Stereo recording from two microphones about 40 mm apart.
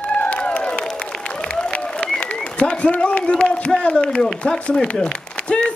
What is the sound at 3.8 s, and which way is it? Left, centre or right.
A man's voice, centre.